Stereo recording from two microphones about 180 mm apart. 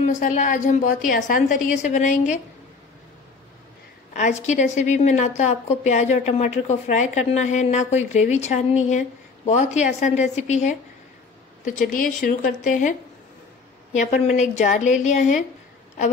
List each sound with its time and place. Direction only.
0.0 s a woman's voice: 40° left (ahead or behind)
4.1 s a woman's voice: 40° left (ahead or behind)
13.9 s a woman's voice: 45° left (ahead or behind)